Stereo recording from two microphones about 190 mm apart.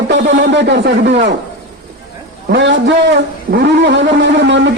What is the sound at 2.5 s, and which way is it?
A man's voice, 70° right (ahead or behind).